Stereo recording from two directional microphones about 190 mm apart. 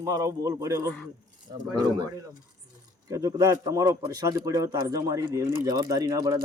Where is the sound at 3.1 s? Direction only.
20° right (ahead or behind).